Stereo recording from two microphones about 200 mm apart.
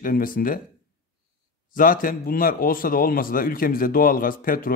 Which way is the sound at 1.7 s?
45° left (ahead or behind).